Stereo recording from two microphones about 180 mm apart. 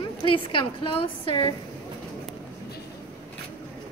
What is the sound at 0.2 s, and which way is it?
A woman's voice, 30° left (ahead or behind).